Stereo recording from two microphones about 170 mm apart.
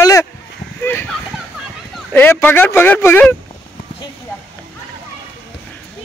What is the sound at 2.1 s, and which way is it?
Speech, 10° left (ahead or behind).